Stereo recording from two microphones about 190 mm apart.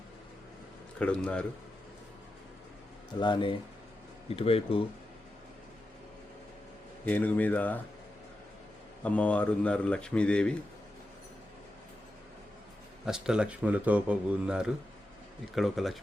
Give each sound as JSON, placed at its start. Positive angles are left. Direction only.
{"t": 0.9, "sound": "speech", "side_deg": 5}
{"t": 3.2, "sound": "speech", "side_deg": 25}
{"t": 7.0, "sound": "speech", "side_deg": 10}
{"t": 9.0, "sound": "speech", "side_deg": 5}
{"t": 13.1, "sound": "speech", "side_deg": -5}